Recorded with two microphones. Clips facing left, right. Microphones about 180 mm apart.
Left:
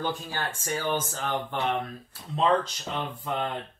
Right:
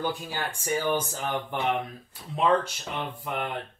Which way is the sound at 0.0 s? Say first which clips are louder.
Even; 15° right (ahead or behind).